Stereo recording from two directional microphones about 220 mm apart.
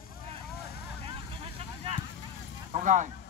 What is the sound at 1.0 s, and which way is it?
Vehicle, 25° right (ahead or behind).